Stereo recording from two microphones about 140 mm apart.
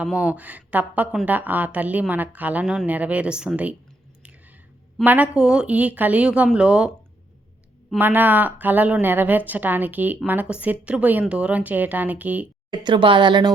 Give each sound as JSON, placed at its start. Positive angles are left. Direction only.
{"t": 0.0, "sound": "speech", "side_deg": -10}
{"t": 5.0, "sound": "speech", "side_deg": -10}
{"t": 7.9, "sound": "speech", "side_deg": -15}
{"t": 12.7, "sound": "speech", "side_deg": -35}